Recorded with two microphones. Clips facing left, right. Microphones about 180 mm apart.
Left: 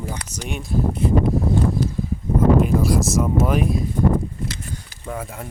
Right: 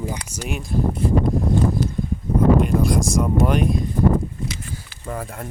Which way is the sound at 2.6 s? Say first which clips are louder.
Left 1 dB; 5° left (ahead or behind).